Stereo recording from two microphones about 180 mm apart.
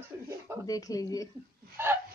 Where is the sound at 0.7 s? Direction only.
20° left (ahead or behind).